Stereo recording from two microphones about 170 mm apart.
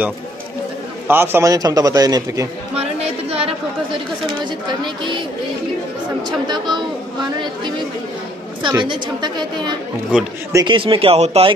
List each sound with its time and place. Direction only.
1.0 s a man's voice: 15° right (ahead or behind)
3.3 s a sound: 35° right (ahead or behind)
4.6 s a man's voice: 25° right (ahead or behind)
6.2 s a man's voice: 25° right (ahead or behind)
8.6 s a man's voice: 25° right (ahead or behind)
10.1 s speech: 5° right (ahead or behind)
10.5 s speech: 25° right (ahead or behind)